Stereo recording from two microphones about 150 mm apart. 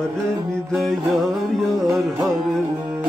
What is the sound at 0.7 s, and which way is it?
Music, centre (ahead or behind).